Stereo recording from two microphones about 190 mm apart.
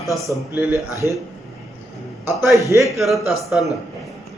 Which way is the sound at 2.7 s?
15° right (ahead or behind).